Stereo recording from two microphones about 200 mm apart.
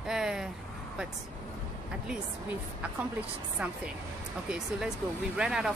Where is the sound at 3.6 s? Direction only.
5° right (ahead or behind).